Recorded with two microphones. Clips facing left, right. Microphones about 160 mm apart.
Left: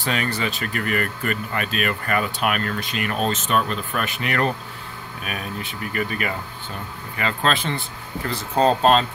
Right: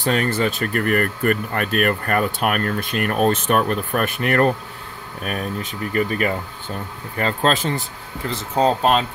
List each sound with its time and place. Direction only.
0.0 s speech: 45° right (ahead or behind)
8.3 s speech: 15° right (ahead or behind)